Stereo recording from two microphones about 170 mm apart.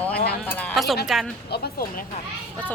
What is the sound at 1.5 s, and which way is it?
Speech, 65° left (ahead or behind).